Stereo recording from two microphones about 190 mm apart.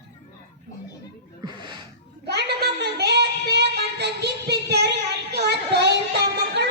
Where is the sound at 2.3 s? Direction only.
60° right (ahead or behind).